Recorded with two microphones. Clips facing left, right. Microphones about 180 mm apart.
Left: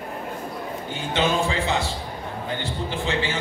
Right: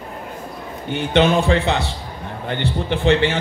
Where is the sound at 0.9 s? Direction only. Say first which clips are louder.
Right 8 dB; 65° right (ahead or behind).